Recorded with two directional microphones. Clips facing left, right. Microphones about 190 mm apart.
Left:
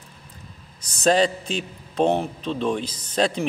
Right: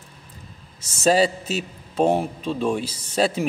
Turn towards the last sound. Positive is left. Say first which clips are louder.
# right 1 dB
turn(degrees=-5)  # may be behind; listen again after turning